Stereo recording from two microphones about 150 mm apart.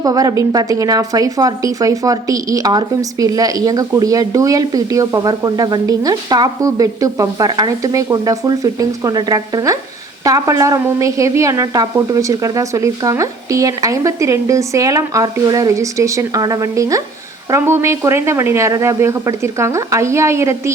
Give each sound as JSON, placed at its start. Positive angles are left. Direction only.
{"t": 0.0, "sound": "a woman's voice", "side_deg": -25}